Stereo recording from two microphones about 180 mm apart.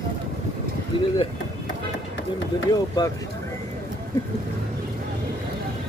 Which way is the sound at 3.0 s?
20° left (ahead or behind).